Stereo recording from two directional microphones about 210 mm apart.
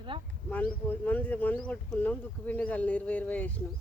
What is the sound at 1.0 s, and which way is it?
Speech, 5° left (ahead or behind).